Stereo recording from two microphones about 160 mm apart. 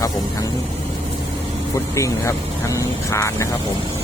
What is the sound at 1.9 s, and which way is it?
Speech, 20° left (ahead or behind).